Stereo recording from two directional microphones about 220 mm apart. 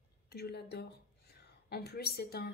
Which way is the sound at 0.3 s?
45° left (ahead or behind).